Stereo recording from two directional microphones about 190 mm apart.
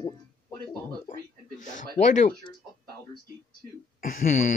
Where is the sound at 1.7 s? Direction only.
40° left (ahead or behind).